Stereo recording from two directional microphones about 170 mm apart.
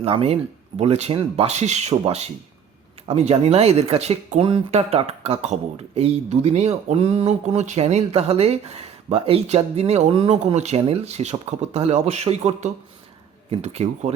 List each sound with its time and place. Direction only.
0.0 s speech: 35° right (ahead or behind)